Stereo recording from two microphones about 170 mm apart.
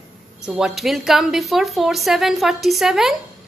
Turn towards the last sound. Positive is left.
turn(degrees=0)  # may be behind; listen again after turning